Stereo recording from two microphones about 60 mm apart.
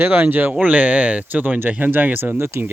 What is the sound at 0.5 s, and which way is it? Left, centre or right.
Speech, right.